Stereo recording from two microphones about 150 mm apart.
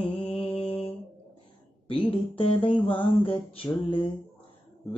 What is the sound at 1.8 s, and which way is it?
Music, 40° left (ahead or behind).